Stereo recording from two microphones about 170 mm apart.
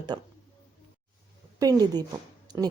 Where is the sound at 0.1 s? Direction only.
25° right (ahead or behind).